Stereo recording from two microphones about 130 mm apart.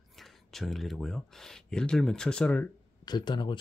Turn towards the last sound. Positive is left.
turn(degrees=35)  # may be behind; listen again after turning